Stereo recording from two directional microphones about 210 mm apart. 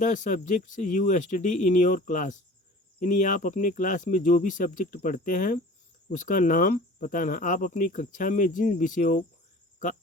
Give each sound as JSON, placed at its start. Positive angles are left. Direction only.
{"t": 0.0, "sound": "speech", "side_deg": 40}